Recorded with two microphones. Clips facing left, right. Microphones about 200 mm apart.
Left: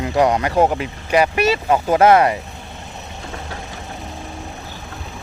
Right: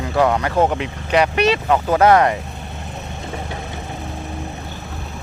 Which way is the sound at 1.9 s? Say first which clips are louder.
Left 1 dB; 20° left (ahead or behind).